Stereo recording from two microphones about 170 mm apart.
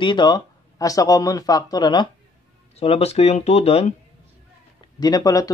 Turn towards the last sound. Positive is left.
turn(degrees=20)  # may be behind; listen again after turning